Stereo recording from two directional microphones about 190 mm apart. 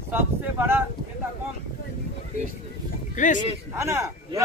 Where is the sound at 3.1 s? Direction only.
40° left (ahead or behind).